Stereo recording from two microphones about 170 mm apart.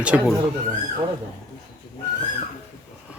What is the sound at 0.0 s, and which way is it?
Speech, 5° right (ahead or behind).